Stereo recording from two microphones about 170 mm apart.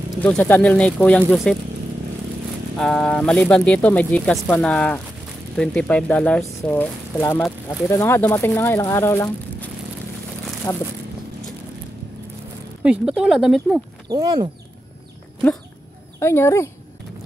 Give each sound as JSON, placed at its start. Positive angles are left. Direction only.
{"t": 0.2, "sound": "speech", "side_deg": 10}
{"t": 2.8, "sound": "speech", "side_deg": 5}
{"t": 7.4, "sound": "speech", "side_deg": 0}
{"t": 7.9, "sound": "speech", "side_deg": 15}
{"t": 10.7, "sound": "speech", "side_deg": 15}
{"t": 12.8, "sound": "speech", "side_deg": -5}
{"t": 14.0, "sound": "speech", "side_deg": -20}
{"t": 16.2, "sound": "speech", "side_deg": 15}